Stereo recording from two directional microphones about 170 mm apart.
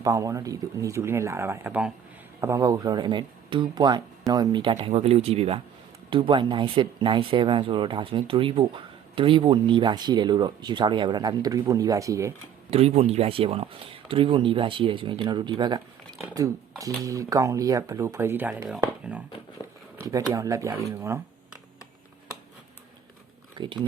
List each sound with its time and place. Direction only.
0.0 s speech: 20° right (ahead or behind)
12.7 s speech: 35° right (ahead or behind); by 19.2 s 10° right (ahead or behind)
19.6 s a sound: 15° right (ahead or behind)
20.0 s speech: 20° right (ahead or behind)
23.6 s speech: 30° right (ahead or behind)